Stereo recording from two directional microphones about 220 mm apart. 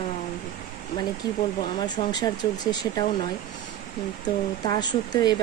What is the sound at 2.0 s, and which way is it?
Speech, 20° left (ahead or behind).